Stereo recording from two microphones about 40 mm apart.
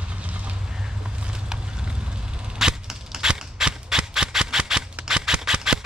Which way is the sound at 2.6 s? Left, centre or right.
Centre.